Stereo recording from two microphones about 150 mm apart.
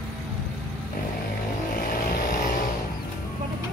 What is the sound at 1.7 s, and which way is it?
Vehicle, 80° left.